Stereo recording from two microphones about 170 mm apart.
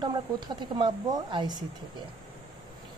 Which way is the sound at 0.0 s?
25° right (ahead or behind).